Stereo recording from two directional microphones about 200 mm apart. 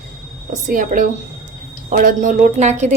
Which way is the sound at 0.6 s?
45° right (ahead or behind).